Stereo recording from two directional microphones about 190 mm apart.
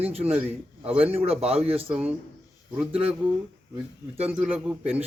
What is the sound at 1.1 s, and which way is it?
Speech, 30° right (ahead or behind).